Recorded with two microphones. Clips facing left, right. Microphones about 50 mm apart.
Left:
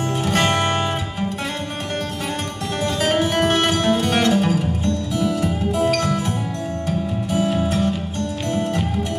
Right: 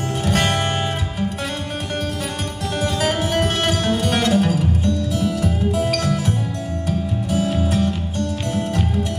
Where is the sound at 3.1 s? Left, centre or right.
Left.